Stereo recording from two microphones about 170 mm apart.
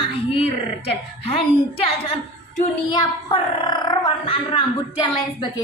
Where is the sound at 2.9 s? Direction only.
25° left (ahead or behind).